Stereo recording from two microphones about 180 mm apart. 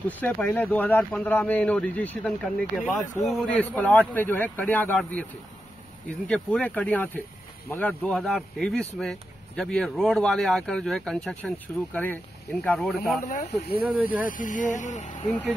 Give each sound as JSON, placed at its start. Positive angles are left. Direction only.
{"t": 0.2, "sound": "a man's voice", "side_deg": 10}
{"t": 6.2, "sound": "a man's voice", "side_deg": 5}
{"t": 13.3, "sound": "speech", "side_deg": 35}
{"t": 13.7, "sound": "speech", "side_deg": -10}
{"t": 14.2, "sound": "speech", "side_deg": 45}